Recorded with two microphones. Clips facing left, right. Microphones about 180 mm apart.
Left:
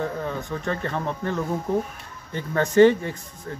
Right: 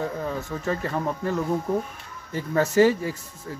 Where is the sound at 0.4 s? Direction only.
5° right (ahead or behind).